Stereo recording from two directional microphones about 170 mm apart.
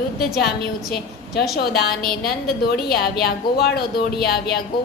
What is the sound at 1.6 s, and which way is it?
A woman's voice, 70° left (ahead or behind).